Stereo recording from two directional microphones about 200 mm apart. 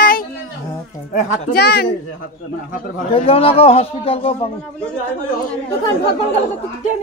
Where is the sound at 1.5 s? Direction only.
50° left (ahead or behind).